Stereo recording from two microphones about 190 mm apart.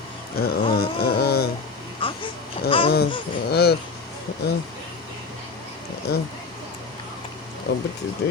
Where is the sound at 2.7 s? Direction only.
30° left (ahead or behind).